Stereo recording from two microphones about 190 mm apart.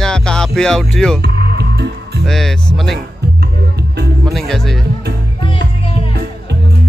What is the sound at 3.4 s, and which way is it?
Music, 60° right (ahead or behind).